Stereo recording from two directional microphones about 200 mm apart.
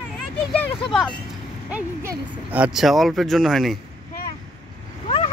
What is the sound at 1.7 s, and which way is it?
Speech, 10° right (ahead or behind).